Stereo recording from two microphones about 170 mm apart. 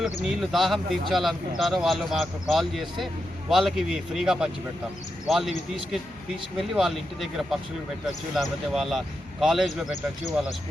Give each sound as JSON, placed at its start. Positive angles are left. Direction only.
{"t": 0.0, "sound": "speech", "side_deg": 0}